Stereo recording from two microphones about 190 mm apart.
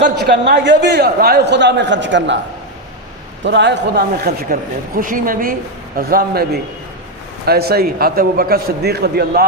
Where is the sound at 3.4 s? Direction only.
70° right (ahead or behind).